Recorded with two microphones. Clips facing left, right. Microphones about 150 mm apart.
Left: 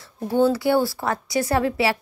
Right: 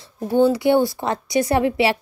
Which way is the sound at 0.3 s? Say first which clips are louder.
Right 3 dB; 15° right (ahead or behind).